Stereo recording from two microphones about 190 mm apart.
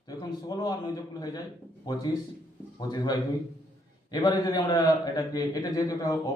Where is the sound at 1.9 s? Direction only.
20° left (ahead or behind).